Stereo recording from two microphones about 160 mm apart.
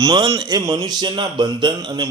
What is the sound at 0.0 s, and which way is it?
A man's voice, 20° right (ahead or behind).